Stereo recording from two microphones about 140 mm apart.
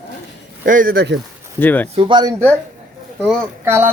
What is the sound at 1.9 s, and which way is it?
Speech, 35° right (ahead or behind).